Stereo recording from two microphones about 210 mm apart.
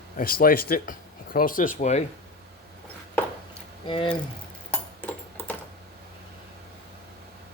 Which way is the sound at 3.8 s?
20° left (ahead or behind).